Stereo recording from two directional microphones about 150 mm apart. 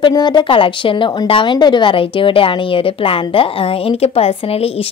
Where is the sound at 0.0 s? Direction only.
30° left (ahead or behind).